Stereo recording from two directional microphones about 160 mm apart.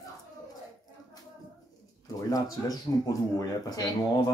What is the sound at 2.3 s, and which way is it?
Speech, 20° left (ahead or behind).